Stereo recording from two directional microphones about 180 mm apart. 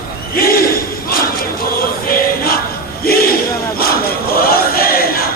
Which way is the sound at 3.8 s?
55° left (ahead or behind).